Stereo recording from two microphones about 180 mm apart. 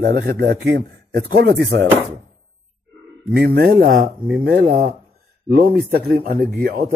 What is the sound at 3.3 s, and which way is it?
Speech, 60° right (ahead or behind).